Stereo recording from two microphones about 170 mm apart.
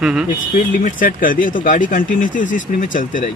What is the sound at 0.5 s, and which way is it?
A man's voice, 50° left (ahead or behind).